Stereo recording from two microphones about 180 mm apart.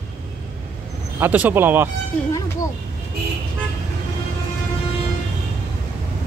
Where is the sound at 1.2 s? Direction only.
10° right (ahead or behind).